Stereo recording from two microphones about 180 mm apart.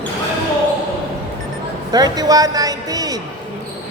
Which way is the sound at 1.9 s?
20° right (ahead or behind).